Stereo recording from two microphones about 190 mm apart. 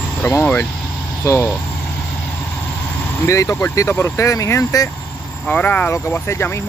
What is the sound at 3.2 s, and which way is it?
Speech, 15° left (ahead or behind).